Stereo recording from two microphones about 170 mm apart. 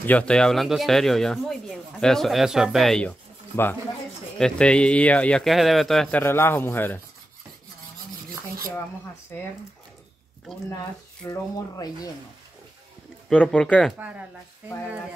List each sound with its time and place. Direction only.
0.0 s speech: 10° left (ahead or behind)
6.2 s speech: 15° left (ahead or behind)
9.3 s speech: 15° left (ahead or behind)
11.2 s speech: 20° left (ahead or behind)
13.3 s speech: 10° left (ahead or behind)
13.9 s speech: 10° right (ahead or behind)